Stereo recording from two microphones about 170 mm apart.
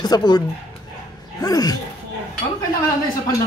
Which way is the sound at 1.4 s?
20° left (ahead or behind).